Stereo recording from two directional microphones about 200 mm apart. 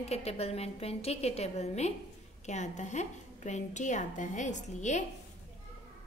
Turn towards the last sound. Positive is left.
turn(degrees=35)  # may be behind; listen again after turning